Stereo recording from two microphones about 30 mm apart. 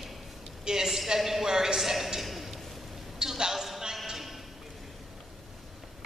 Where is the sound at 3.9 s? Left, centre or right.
Centre.